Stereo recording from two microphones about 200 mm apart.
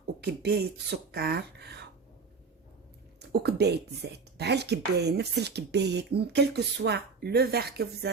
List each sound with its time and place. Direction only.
0.0 s speech: 55° right (ahead or behind)
3.2 s speech: 55° right (ahead or behind)